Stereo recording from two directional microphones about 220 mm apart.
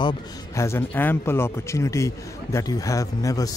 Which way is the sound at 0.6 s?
10° left (ahead or behind).